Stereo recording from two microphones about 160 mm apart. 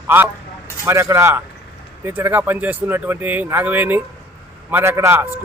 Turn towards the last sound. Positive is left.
turn(degrees=-15)  # may be behind; listen again after turning